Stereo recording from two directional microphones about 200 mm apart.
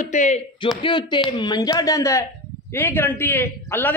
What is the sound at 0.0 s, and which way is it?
Speech, 35° left (ahead or behind).